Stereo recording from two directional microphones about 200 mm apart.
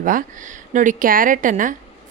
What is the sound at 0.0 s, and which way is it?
A woman's voice, 40° right (ahead or behind).